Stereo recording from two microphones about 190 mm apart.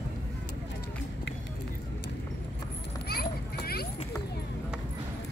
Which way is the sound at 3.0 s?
55° left (ahead or behind).